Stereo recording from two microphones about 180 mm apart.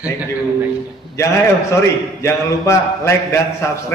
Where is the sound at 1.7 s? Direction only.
15° left (ahead or behind).